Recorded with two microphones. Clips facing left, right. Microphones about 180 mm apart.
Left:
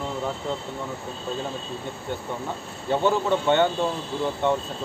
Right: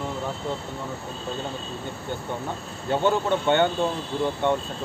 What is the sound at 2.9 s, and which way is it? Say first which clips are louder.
Speech: even; centre (ahead or behind).